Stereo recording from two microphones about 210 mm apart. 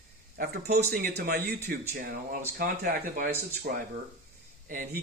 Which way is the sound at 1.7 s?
40° right (ahead or behind).